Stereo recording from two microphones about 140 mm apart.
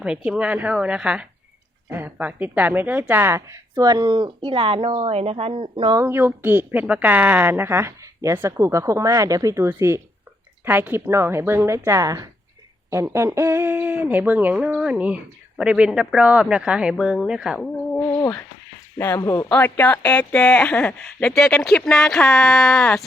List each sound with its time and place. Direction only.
0.0 s a woman's voice: 5° right (ahead or behind); by 6.0 s 35° right (ahead or behind)
6.0 s a woman's voice: 15° right (ahead or behind)
18.0 s a sound: 25° left (ahead or behind)
18.9 s speech: 20° left (ahead or behind)